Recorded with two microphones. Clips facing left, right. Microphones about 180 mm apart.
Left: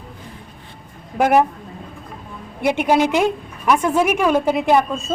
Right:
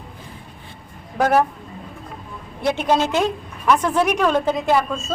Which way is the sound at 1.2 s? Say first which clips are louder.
Left 2 dB; 15° left (ahead or behind).